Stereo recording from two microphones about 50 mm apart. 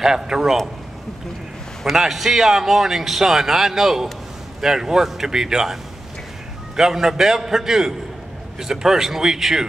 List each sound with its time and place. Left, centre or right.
0.0 s a man's voice: centre
1.9 s a man's voice: centre
6.8 s a man's voice: centre